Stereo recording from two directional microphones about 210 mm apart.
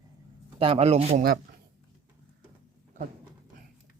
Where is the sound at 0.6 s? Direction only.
25° right (ahead or behind).